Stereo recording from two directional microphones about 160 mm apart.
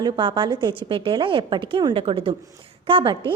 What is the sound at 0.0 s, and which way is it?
A woman's voice, 30° right (ahead or behind).